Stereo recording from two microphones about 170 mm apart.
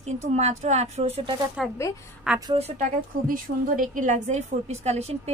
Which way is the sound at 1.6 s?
Centre (ahead or behind).